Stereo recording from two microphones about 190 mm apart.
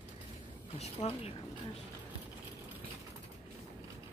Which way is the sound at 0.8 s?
30° left (ahead or behind).